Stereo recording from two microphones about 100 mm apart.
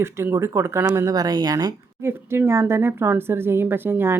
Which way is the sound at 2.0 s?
25° right (ahead or behind).